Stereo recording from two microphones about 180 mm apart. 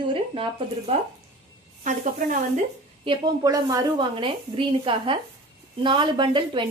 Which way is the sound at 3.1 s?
25° right (ahead or behind).